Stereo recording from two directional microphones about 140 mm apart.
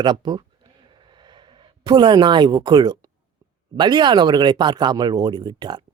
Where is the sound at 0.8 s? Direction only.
35° right (ahead or behind).